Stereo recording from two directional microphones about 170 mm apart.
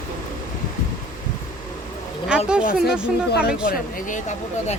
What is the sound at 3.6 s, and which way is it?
Speech, 55° left (ahead or behind).